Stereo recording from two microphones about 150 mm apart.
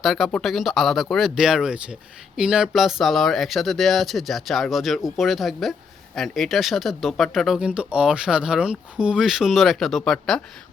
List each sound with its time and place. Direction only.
0.0 s speech: centre (ahead or behind)